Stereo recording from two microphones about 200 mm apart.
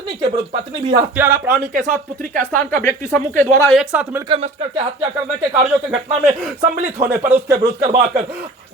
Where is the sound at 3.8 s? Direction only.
10° right (ahead or behind).